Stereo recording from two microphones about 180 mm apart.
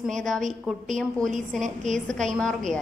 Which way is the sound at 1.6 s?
45° right (ahead or behind).